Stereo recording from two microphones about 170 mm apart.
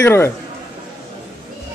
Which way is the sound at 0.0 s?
15° left (ahead or behind).